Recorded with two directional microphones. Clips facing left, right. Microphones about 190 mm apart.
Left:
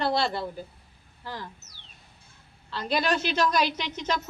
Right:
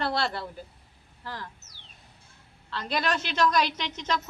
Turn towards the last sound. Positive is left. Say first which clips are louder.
# left 1 dB
turn(degrees=5)  # may be behind; listen again after turning